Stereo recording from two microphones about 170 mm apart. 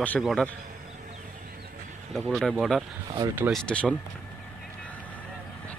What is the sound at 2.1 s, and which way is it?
Speech, centre (ahead or behind).